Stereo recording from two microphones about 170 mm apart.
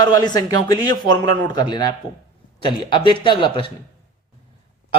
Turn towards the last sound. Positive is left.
turn(degrees=30)  # may be behind; listen again after turning